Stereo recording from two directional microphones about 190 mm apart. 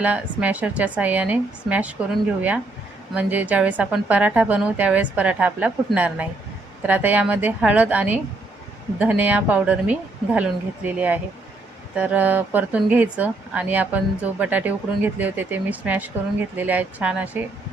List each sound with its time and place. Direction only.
0.0 s speech: 5° right (ahead or behind)